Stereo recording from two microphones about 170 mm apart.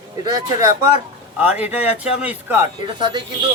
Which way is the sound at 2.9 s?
25° right (ahead or behind).